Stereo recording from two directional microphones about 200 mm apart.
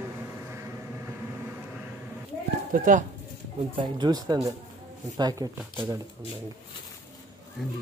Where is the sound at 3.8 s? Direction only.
20° right (ahead or behind).